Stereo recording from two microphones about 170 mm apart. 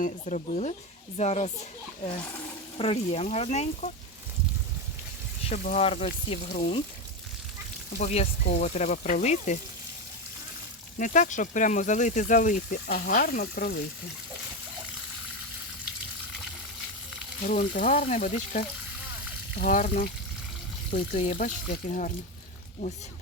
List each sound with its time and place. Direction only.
0.0 s speech: 50° left (ahead or behind)
2.7 s speech: 35° left (ahead or behind)
5.5 s speech: 40° left (ahead or behind)
6.5 s speech: 50° left (ahead or behind)
7.9 s speech: 40° left (ahead or behind)
10.9 s speech: 50° left (ahead or behind)
17.4 s speech: 50° left (ahead or behind)